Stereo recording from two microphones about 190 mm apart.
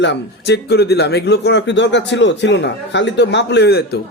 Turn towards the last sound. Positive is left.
turn(degrees=60)  # may be behind; listen again after turning